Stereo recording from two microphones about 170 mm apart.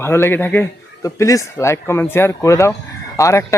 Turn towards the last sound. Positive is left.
turn(degrees=15)  # may be behind; listen again after turning